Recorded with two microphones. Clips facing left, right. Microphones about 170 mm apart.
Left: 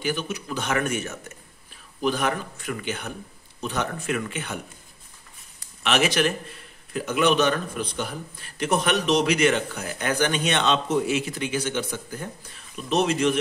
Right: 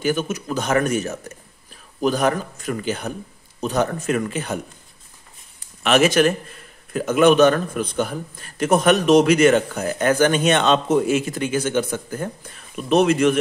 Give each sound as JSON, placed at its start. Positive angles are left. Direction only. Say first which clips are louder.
{"t": 0.0, "sound": "a man's voice", "louder": "right 6 dB", "side_deg": -45}
{"t": 5.9, "sound": "a man's voice", "louder": "right 6 dB", "side_deg": -50}